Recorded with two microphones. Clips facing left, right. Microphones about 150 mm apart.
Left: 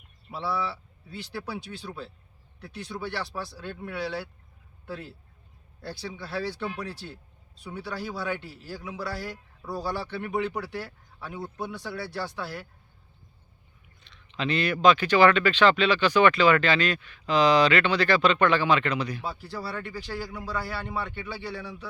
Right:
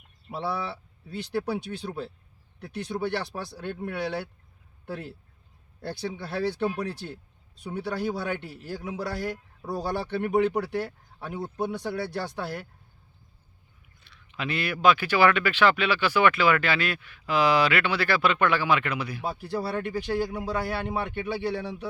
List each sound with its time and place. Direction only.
0.5 s speech: 20° right (ahead or behind)
1.5 s a man's voice: 50° right (ahead or behind)
6.1 s speech: 20° right (ahead or behind)
6.7 s a man's voice: 45° right (ahead or behind)
9.6 s a man's voice: 20° right (ahead or behind)
9.8 s a man's voice: 50° right (ahead or behind)
11.3 s speech: 20° right (ahead or behind)
12.4 s a man's voice: 50° right (ahead or behind)
14.0 s speech: 10° right (ahead or behind)
19.5 s speech: 20° right (ahead or behind)